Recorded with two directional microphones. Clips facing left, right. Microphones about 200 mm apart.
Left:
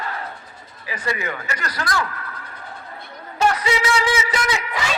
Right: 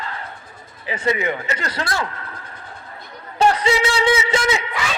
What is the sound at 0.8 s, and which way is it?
A man's voice, 25° right (ahead or behind).